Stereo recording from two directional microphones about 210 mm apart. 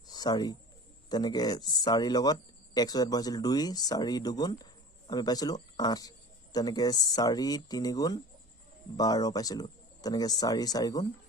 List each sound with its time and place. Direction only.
0.1 s bird: 20° left (ahead or behind)
1.1 s speech: 20° left (ahead or behind)